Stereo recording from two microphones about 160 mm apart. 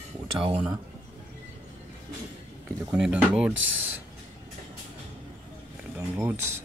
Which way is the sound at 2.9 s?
5° right (ahead or behind).